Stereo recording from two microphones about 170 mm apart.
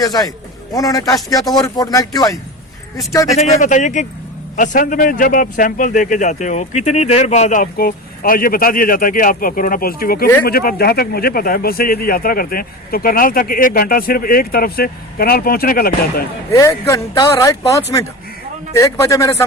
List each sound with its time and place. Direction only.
0.0 s speech: 20° left (ahead or behind)
3.3 s a man's voice: 40° left (ahead or behind); by 16.2 s 60° left (ahead or behind)
16.5 s speech: 15° left (ahead or behind)
18.8 s speech: 20° left (ahead or behind)